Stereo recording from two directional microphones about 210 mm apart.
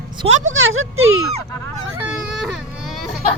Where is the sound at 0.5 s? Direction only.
70° right (ahead or behind).